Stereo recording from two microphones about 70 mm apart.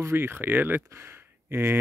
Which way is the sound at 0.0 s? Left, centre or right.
Right.